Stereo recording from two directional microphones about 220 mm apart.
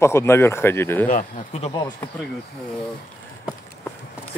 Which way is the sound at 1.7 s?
15° left (ahead or behind).